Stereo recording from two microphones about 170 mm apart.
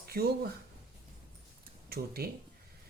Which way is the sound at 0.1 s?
65° right (ahead or behind).